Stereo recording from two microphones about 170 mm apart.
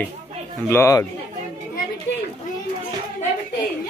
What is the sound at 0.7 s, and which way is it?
Speech, 15° left (ahead or behind).